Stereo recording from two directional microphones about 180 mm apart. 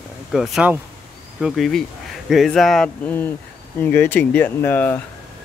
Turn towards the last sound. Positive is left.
turn(degrees=10)  # may be behind; listen again after turning